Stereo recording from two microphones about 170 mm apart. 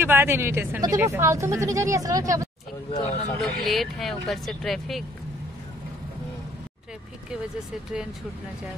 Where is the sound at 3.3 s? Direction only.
Centre (ahead or behind).